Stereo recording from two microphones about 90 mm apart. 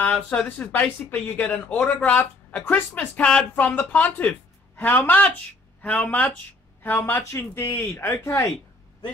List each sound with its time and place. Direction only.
0.0 s speech: 10° left (ahead or behind)
7.0 s speech: 30° left (ahead or behind)